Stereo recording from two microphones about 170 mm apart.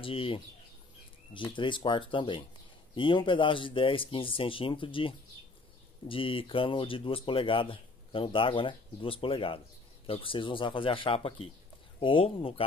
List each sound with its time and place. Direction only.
0.0 s speech: 30° left (ahead or behind)